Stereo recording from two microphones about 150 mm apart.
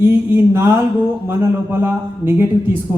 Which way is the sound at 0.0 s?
15° right (ahead or behind).